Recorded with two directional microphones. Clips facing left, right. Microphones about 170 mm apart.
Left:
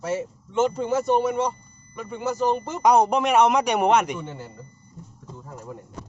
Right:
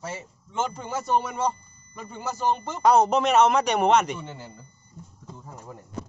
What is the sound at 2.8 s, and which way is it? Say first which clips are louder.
A man's voice: even; 15° left (ahead or behind).